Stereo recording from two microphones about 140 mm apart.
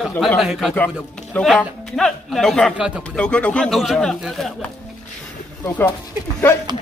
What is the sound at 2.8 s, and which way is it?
Speech, 10° right (ahead or behind).